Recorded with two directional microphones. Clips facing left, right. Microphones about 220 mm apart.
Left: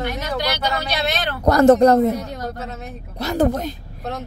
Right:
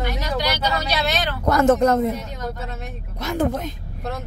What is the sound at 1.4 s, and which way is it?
Speech, 40° left (ahead or behind).